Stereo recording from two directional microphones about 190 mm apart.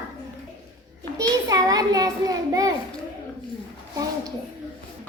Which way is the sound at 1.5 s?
20° right (ahead or behind).